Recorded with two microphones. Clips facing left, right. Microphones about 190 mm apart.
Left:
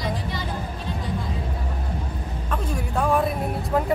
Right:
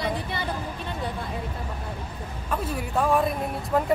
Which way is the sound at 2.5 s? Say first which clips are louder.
Even; centre (ahead or behind).